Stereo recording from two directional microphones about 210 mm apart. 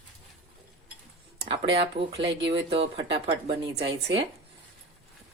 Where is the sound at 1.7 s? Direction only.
25° right (ahead or behind).